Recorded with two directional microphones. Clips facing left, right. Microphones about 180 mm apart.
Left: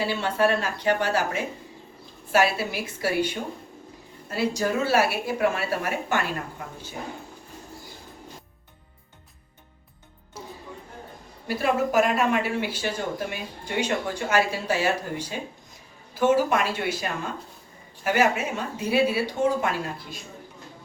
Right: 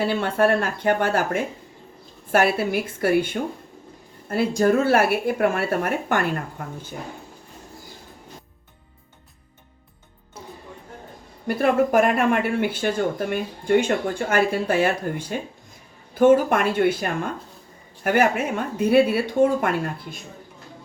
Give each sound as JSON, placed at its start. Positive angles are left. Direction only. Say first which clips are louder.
{"t": 0.0, "sound": "speech", "louder": "right 3 dB", "side_deg": -55}
{"t": 11.4, "sound": "speech", "louder": "right 5 dB", "side_deg": -55}